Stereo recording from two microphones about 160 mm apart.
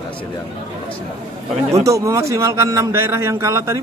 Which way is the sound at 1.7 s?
20° right (ahead or behind).